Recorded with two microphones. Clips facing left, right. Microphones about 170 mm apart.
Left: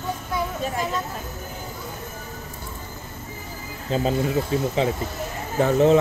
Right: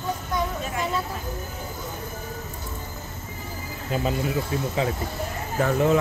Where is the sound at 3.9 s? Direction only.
25° left (ahead or behind).